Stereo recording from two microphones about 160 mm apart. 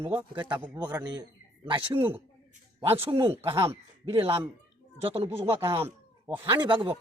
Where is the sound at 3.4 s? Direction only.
35° right (ahead or behind).